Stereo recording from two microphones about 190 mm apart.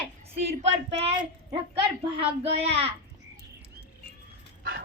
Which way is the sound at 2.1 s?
30° right (ahead or behind).